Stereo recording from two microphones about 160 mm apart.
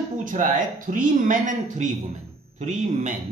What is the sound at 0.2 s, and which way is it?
A man's voice, 55° right (ahead or behind).